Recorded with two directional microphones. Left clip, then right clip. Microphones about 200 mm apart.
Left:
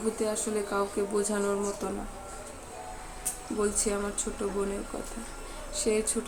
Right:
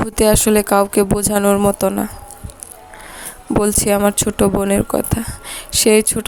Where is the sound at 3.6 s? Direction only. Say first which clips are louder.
Right 14 dB; 60° right (ahead or behind).